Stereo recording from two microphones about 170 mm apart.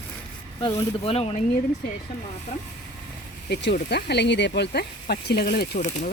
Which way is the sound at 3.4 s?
75° left (ahead or behind).